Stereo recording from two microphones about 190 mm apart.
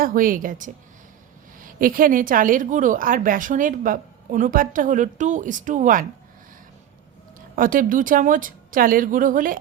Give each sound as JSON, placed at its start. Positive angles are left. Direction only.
{"t": 0.0, "sound": "a woman's voice", "side_deg": -50}
{"t": 7.5, "sound": "a woman's voice", "side_deg": -45}